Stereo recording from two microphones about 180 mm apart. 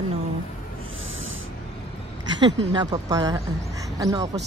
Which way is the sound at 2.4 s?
25° right (ahead or behind).